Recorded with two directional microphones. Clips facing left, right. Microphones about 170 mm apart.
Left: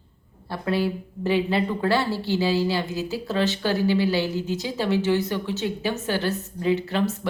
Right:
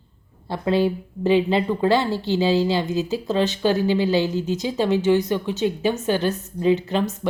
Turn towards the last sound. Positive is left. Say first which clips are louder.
# right 2 dB
turn(degrees=-20)  # may be behind; listen again after turning